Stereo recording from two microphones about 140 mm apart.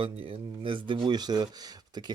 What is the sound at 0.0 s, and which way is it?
Speech, 40° right (ahead or behind).